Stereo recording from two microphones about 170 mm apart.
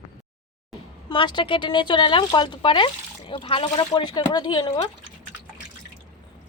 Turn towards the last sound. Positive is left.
turn(degrees=30)  # may be behind; listen again after turning